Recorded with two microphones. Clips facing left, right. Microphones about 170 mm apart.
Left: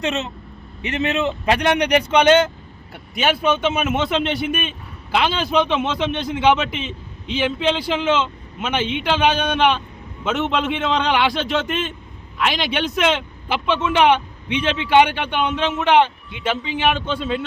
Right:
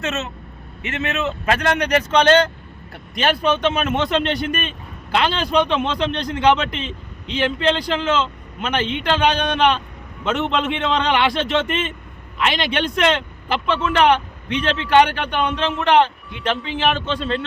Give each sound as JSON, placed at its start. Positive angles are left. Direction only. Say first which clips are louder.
{"t": 0.0, "sound": "a man's voice", "louder": "left 2 dB", "side_deg": 15}